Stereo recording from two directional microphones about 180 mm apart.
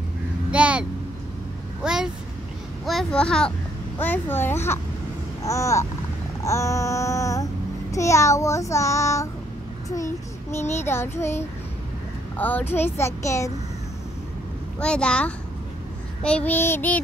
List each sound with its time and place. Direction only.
0.5 s vehicle: 5° right (ahead or behind)
2.8 s a child's voice: centre (ahead or behind); by 5.9 s 15° left (ahead or behind)
6.4 s a sound: 15° left (ahead or behind)
7.9 s a child's voice: 15° left (ahead or behind)
14.8 s a child's voice: 5° left (ahead or behind)